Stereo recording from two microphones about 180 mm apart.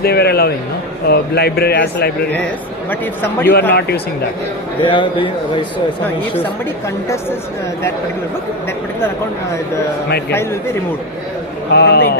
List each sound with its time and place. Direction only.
0.0 s a sound: 60° left (ahead or behind)
1.0 s speech: 60° left (ahead or behind)
2.9 s a man's voice: 10° left (ahead or behind)
3.7 s speech: 65° left (ahead or behind)
4.8 s a man's voice: 25° left (ahead or behind)
10.1 s speech: 65° left (ahead or behind)
11.7 s speech: 65° left (ahead or behind)